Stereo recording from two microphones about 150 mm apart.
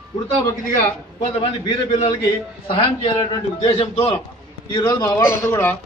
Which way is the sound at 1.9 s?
45° left (ahead or behind).